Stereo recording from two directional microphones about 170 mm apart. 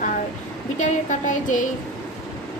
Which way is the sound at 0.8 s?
45° left (ahead or behind).